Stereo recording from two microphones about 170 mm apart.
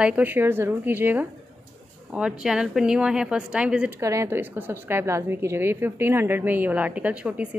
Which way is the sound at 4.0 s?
15° right (ahead or behind).